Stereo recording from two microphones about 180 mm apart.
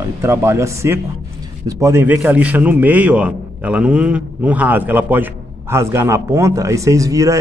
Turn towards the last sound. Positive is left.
turn(degrees=-15)  # may be behind; listen again after turning